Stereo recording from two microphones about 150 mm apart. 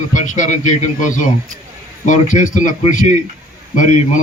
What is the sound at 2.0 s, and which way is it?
Speech, 55° left (ahead or behind).